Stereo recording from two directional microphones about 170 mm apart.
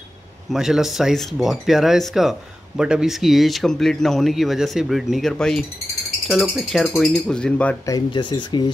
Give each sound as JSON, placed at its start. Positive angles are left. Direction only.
{"t": 0.5, "sound": "speech", "side_deg": -5}
{"t": 7.8, "sound": "speech", "side_deg": 25}